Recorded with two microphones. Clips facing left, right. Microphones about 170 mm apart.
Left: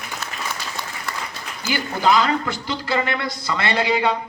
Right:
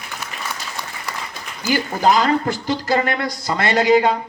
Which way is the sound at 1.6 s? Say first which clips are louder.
Right 3 dB; 45° right (ahead or behind).